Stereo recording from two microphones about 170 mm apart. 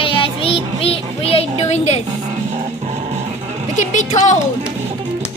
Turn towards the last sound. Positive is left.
turn(degrees=45)  # may be behind; listen again after turning